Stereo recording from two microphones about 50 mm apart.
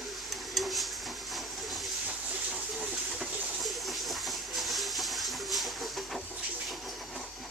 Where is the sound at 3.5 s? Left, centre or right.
Centre.